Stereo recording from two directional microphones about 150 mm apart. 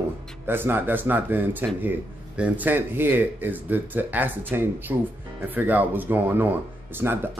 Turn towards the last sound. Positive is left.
turn(degrees=-15)  # may be behind; listen again after turning